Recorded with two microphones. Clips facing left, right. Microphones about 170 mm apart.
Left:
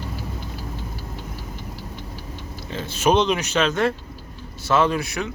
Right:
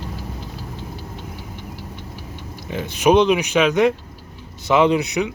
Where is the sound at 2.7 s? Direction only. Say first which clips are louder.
Right 4 dB; 15° right (ahead or behind).